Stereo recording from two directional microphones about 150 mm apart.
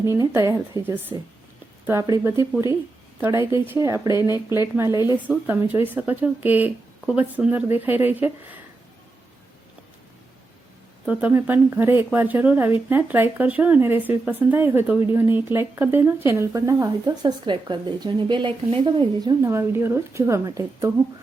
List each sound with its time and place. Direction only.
0.0 s speech: 20° right (ahead or behind)
4.9 s speech: 30° left (ahead or behind)
5.1 s speech: 10° right (ahead or behind)
11.0 s speech: 10° right (ahead or behind)